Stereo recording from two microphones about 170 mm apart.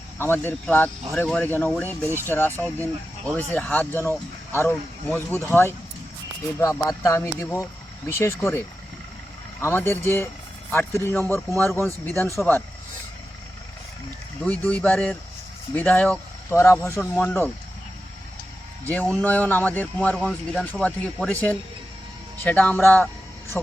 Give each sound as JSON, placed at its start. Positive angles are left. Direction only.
{"t": 0.2, "sound": "speech", "side_deg": 15}
{"t": 14.4, "sound": "speech", "side_deg": 10}
{"t": 18.9, "sound": "speech", "side_deg": 10}
{"t": 22.4, "sound": "speech", "side_deg": 10}